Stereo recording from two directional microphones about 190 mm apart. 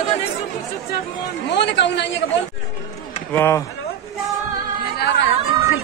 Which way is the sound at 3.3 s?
10° left (ahead or behind).